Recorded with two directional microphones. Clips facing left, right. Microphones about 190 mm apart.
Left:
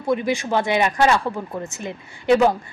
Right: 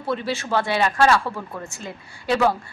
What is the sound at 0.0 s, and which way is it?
A woman's voice, 15° left (ahead or behind).